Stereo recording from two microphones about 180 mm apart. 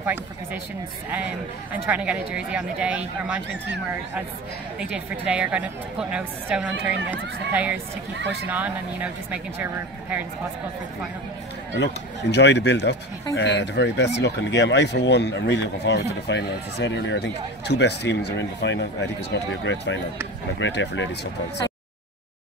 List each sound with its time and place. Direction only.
0.0 s speech: 10° right (ahead or behind)
1.7 s speech: 10° right (ahead or behind)
4.7 s speech: 5° right (ahead or behind)
11.8 s speech: 75° left (ahead or behind)